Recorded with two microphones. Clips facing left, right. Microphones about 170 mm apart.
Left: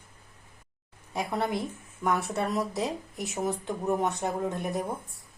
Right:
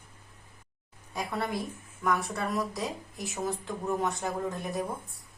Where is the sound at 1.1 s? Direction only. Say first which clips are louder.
Left 3 dB; 25° left (ahead or behind).